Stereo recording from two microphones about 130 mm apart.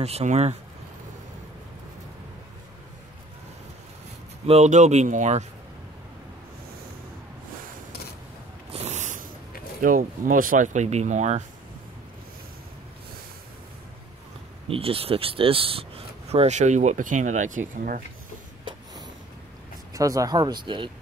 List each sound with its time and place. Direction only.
0.0 s speech: 55° right (ahead or behind)
4.5 s speech: 60° right (ahead or behind)
8.7 s snort: 60° right (ahead or behind)
9.8 s speech: 90° right; by 11.4 s 65° right (ahead or behind)
14.7 s speech: 45° right (ahead or behind)
16.3 s speech: 60° right (ahead or behind)
17.7 s speech: 90° right
19.9 s speech: 25° right (ahead or behind)